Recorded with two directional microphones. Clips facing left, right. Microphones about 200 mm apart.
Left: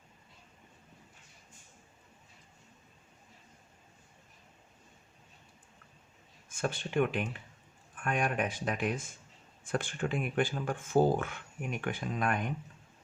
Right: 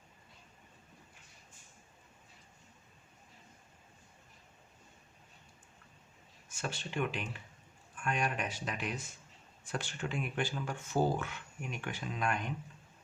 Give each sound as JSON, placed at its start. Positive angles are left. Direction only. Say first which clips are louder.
{"t": 6.5, "sound": "speech", "louder": "left 6 dB", "side_deg": 55}